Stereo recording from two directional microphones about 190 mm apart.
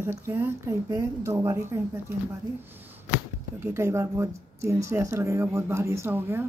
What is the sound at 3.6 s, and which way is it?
A woman's voice, 15° right (ahead or behind).